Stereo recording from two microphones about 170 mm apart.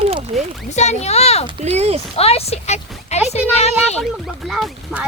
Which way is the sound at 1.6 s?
40° right (ahead or behind).